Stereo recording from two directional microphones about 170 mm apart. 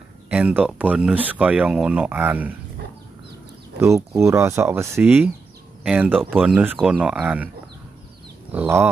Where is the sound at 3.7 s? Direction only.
15° right (ahead or behind).